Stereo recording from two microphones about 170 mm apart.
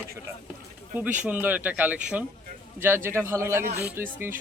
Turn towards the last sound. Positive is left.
turn(degrees=-10)  # may be behind; listen again after turning